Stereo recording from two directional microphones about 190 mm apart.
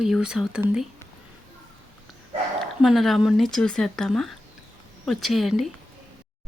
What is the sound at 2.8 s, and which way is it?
Speech, centre (ahead or behind).